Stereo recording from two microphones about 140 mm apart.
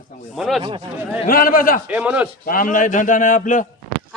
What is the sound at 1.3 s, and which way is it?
Speech, 90° left.